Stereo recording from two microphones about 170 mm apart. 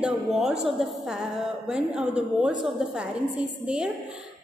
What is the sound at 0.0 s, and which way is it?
A woman's voice, 5° right (ahead or behind).